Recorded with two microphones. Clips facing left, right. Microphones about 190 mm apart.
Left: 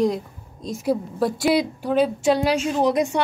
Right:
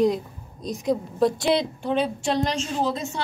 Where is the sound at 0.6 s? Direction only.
5° left (ahead or behind).